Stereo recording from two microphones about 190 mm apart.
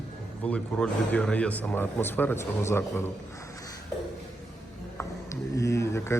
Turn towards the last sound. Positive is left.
turn(degrees=15)  # may be behind; listen again after turning